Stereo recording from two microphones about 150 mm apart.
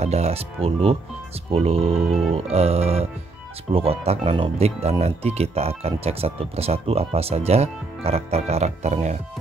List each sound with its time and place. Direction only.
0.0 s speech: 45° right (ahead or behind)
2.0 s music: centre (ahead or behind)
2.3 s speech: 45° right (ahead or behind)